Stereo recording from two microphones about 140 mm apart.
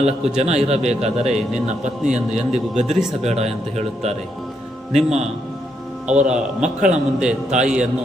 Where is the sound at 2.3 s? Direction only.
50° right (ahead or behind).